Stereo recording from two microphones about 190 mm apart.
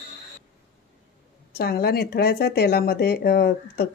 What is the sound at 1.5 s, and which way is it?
Speech, 55° left (ahead or behind).